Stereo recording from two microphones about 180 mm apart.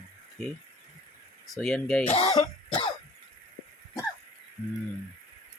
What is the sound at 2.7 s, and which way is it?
Cough, 25° left (ahead or behind).